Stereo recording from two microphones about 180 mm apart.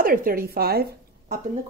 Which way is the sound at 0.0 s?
55° right (ahead or behind).